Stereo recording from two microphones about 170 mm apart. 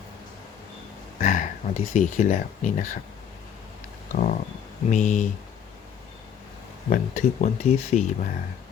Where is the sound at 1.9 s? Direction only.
45° left (ahead or behind).